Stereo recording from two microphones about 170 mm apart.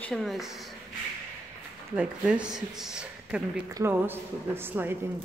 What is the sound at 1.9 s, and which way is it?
Speech, 5° right (ahead or behind).